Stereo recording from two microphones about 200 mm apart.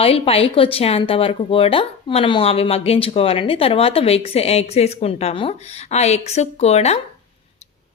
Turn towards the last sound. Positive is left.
turn(degrees=30)  # may be behind; listen again after turning